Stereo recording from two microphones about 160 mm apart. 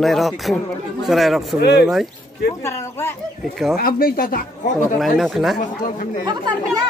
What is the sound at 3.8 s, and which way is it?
Speech, 65° left (ahead or behind).